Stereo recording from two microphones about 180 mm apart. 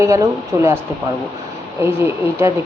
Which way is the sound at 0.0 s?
15° right (ahead or behind).